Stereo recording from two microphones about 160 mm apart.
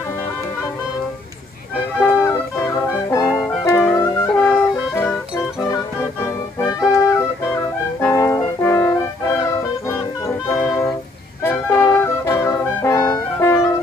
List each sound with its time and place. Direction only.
2.0 s music: 15° left (ahead or behind)
6.6 s music: 20° left (ahead or behind)
9.8 s music: 15° left (ahead or behind)